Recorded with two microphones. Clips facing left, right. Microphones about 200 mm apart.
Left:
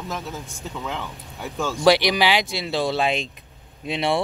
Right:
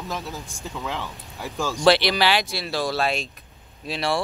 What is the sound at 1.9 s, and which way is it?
Speech, 15° left (ahead or behind).